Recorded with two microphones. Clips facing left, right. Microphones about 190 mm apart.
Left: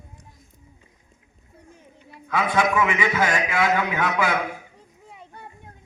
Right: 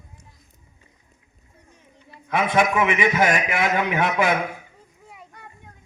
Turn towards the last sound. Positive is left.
turn(degrees=-20)  # may be behind; listen again after turning